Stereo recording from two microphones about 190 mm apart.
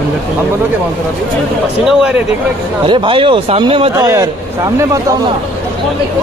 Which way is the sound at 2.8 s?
25° right (ahead or behind).